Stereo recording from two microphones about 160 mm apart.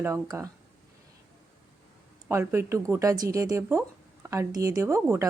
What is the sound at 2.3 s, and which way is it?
Speech, 15° right (ahead or behind).